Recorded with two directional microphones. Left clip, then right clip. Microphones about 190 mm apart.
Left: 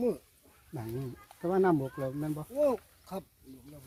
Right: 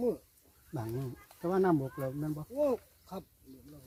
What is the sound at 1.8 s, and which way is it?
Speech, 15° left (ahead or behind).